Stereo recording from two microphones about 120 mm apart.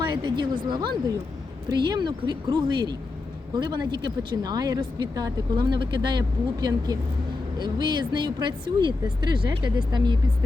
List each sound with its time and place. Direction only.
0.1 s speech: 40° right (ahead or behind)